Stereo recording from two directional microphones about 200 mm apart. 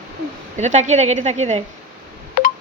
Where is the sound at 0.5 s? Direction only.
35° right (ahead or behind).